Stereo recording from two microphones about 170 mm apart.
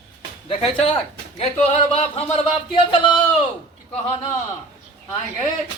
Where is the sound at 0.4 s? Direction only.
35° left (ahead or behind).